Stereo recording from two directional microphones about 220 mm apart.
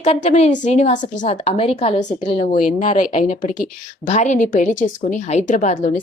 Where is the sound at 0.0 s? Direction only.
30° left (ahead or behind).